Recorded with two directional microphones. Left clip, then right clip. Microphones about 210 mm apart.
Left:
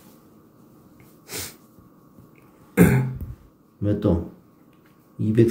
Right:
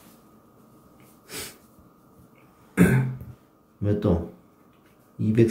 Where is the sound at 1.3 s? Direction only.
45° left (ahead or behind).